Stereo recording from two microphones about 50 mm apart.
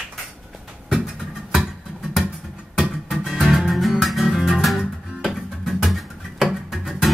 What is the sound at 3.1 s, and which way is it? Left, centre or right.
Music, centre.